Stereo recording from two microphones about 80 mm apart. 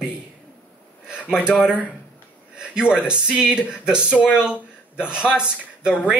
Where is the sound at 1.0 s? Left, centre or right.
Centre.